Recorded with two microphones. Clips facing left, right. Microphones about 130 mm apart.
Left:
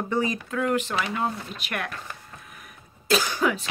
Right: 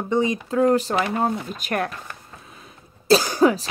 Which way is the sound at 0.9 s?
50° right (ahead or behind).